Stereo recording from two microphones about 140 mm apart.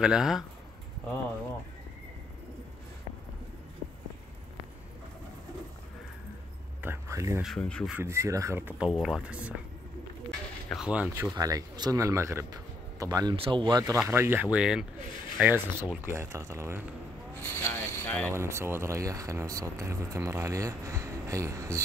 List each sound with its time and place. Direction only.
0.0 s speech: 5° right (ahead or behind)
6.8 s a sound: 20° right (ahead or behind)
7.4 s speech: 5° left (ahead or behind)
7.9 s speech: 20° right (ahead or behind)
10.7 s speech: 5° right (ahead or behind)
11.3 s speech: 25° right (ahead or behind)
14.0 s speech: 20° right (ahead or behind)
17.4 s a sound: 15° left (ahead or behind)
18.3 s speech: 20° right (ahead or behind)